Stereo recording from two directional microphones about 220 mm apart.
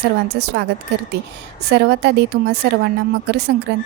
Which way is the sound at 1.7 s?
50° right (ahead or behind).